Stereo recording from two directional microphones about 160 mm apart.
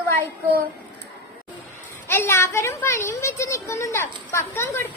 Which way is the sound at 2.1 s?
15° left (ahead or behind).